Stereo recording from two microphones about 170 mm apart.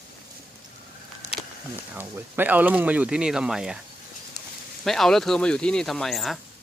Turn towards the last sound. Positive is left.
turn(degrees=0)  # may be behind; listen again after turning